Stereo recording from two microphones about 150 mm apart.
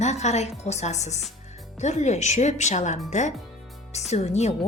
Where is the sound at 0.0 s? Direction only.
50° left (ahead or behind).